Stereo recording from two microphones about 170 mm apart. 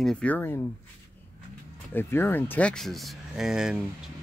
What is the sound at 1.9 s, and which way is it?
Speech, 10° left (ahead or behind).